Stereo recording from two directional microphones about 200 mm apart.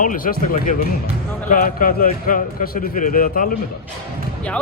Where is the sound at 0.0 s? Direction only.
45° left (ahead or behind).